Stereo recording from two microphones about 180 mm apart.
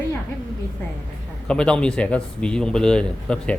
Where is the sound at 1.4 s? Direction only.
5° left (ahead or behind).